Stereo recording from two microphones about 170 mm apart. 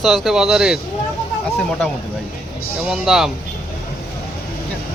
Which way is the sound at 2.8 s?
Centre (ahead or behind).